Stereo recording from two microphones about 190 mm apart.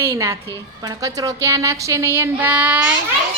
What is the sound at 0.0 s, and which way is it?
Speech, 15° right (ahead or behind).